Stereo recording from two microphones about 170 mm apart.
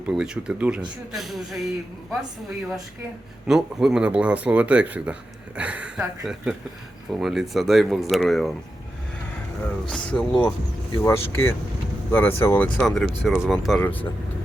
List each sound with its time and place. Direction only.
0.0 s speech: 5° right (ahead or behind)
3.4 s speech: 5° right (ahead or behind)
9.9 s speech: 5° left (ahead or behind)